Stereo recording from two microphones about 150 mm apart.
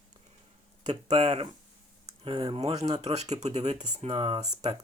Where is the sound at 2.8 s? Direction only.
45° right (ahead or behind).